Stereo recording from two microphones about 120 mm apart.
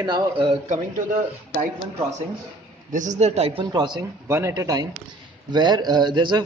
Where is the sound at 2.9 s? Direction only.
90° right; by 3.6 s 60° right (ahead or behind).